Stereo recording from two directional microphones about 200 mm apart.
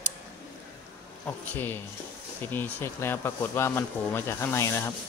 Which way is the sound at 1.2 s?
10° left (ahead or behind).